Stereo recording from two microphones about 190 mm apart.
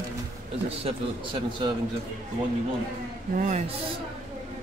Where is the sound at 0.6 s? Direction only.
30° right (ahead or behind).